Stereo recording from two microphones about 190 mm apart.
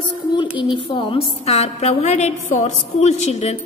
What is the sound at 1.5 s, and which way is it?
A woman's voice, 35° left (ahead or behind).